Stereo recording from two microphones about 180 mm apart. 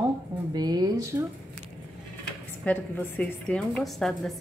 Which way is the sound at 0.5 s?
20° right (ahead or behind).